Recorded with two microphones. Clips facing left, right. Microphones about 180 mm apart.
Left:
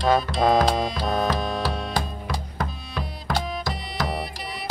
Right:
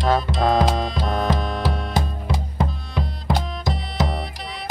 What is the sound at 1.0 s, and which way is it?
Music, 5° left (ahead or behind).